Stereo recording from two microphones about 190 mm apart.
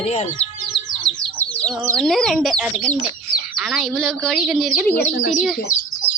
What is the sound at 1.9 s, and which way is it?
Speech, centre (ahead or behind).